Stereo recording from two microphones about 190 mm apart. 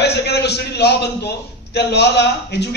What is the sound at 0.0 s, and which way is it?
A man's voice, 60° left (ahead or behind).